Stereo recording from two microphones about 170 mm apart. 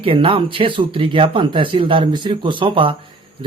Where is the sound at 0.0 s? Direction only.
30° right (ahead or behind).